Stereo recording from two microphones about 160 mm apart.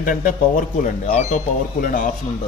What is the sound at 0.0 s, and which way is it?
Speech, 60° left (ahead or behind).